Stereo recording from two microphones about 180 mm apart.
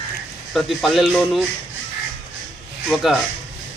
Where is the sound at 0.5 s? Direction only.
Centre (ahead or behind).